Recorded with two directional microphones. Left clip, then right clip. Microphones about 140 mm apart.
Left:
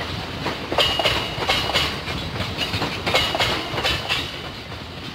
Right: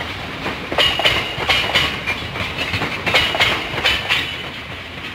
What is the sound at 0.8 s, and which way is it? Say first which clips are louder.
Train: right 4 dB; 20° left (ahead or behind).